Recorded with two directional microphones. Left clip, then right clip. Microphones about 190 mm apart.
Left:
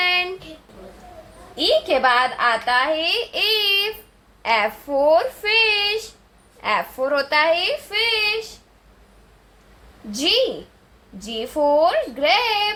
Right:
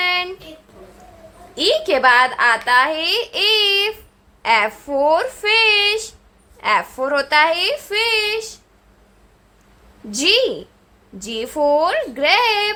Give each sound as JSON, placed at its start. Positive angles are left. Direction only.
{"t": 0.0, "sound": "a sound", "side_deg": 0}
{"t": 1.5, "sound": "a child's voice", "side_deg": -25}
{"t": 10.1, "sound": "a woman's voice", "side_deg": -30}